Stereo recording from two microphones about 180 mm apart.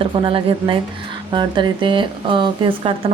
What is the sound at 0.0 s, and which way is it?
A woman's voice, 30° right (ahead or behind).